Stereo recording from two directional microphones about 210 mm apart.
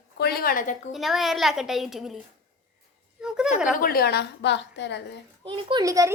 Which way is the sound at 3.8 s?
45° left (ahead or behind).